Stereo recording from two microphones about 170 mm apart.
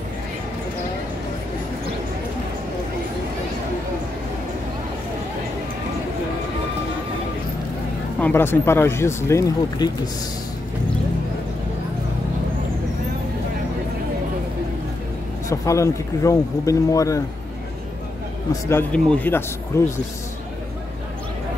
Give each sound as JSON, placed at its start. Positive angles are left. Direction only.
{"t": 8.2, "sound": "speech", "side_deg": 10}
{"t": 15.4, "sound": "speech", "side_deg": 20}
{"t": 18.5, "sound": "speech", "side_deg": 15}